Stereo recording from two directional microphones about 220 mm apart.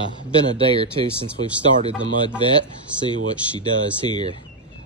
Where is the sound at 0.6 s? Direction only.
25° right (ahead or behind).